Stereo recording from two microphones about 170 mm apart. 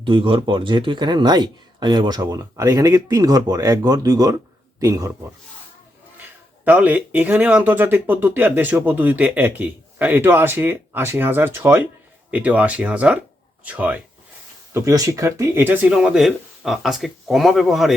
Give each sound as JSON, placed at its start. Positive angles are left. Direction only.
{"t": 0.0, "sound": "speech", "side_deg": -30}
{"t": 6.7, "sound": "speech", "side_deg": -10}
{"t": 14.7, "sound": "speech", "side_deg": -20}